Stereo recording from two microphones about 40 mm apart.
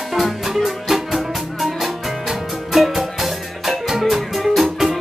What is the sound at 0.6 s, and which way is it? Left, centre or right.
Music, centre.